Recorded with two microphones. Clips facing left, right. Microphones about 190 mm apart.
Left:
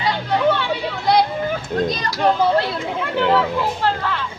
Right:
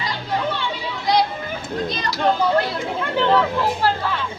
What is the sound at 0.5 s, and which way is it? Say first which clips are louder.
Chatter: left 4 dB; 60° left (ahead or behind).